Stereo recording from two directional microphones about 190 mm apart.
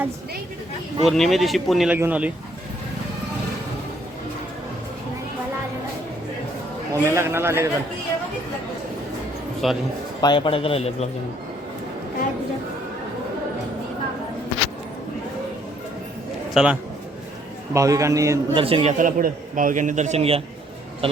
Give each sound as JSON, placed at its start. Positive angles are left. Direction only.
{"t": 1.0, "sound": "a man's voice", "side_deg": 0}
{"t": 6.9, "sound": "a man's voice", "side_deg": -15}
{"t": 9.6, "sound": "speech", "side_deg": 0}
{"t": 10.2, "sound": "a man's voice", "side_deg": 25}
{"t": 16.6, "sound": "speech", "side_deg": -5}
{"t": 17.7, "sound": "a man's voice", "side_deg": -15}
{"t": 18.6, "sound": "a man's voice", "side_deg": -30}